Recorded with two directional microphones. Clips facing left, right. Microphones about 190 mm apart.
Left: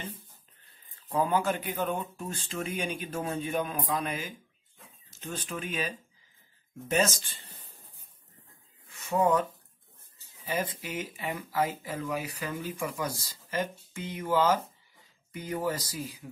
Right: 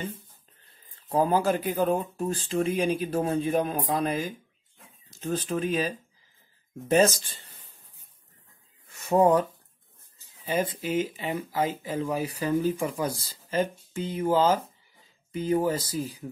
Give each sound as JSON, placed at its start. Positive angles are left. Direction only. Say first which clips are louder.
{"t": 1.0, "sound": "speech", "louder": "right 4 dB", "side_deg": -40}
{"t": 8.9, "sound": "speech", "louder": "right 5 dB", "side_deg": -45}